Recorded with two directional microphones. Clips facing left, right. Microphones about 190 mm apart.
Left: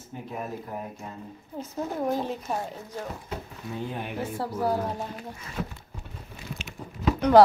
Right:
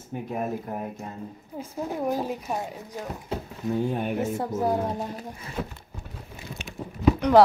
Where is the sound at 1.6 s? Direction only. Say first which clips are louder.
Even; 10° right (ahead or behind).